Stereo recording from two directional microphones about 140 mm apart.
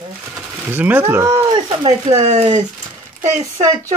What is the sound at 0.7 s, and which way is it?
Speech, 15° right (ahead or behind).